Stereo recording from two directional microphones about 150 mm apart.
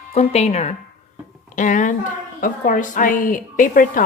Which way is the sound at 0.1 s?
45° left (ahead or behind).